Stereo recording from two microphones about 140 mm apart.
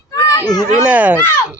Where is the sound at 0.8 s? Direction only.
10° right (ahead or behind).